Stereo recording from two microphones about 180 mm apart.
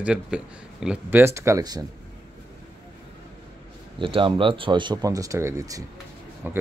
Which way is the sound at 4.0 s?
30° right (ahead or behind).